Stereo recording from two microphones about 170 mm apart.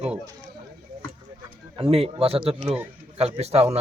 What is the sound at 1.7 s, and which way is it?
Speech, 35° right (ahead or behind).